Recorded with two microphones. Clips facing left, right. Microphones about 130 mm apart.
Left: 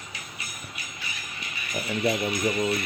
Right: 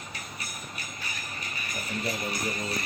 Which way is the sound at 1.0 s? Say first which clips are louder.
Even; 40° right (ahead or behind).